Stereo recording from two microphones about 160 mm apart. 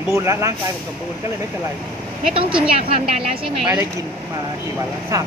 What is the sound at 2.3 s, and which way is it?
A woman's voice, 35° right (ahead or behind).